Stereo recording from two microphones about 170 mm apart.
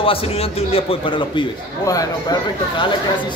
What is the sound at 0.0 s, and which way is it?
A man's voice, 35° left (ahead or behind).